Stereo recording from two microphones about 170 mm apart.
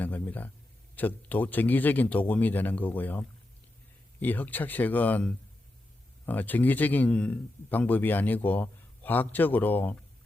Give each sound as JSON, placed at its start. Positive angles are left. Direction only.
{"t": 0.0, "sound": "a man's voice", "side_deg": 10}